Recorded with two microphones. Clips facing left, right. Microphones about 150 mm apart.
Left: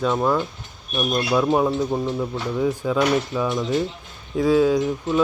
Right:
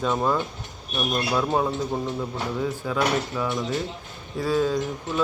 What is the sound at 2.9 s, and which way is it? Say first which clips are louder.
Speech: left 3 dB; 15° left (ahead or behind).